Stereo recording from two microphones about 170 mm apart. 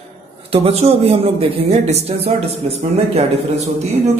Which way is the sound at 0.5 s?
35° right (ahead or behind).